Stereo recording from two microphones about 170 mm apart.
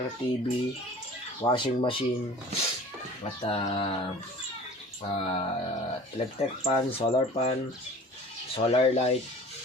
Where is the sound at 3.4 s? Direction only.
35° left (ahead or behind).